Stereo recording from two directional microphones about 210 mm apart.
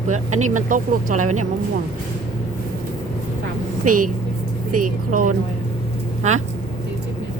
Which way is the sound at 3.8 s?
40° right (ahead or behind).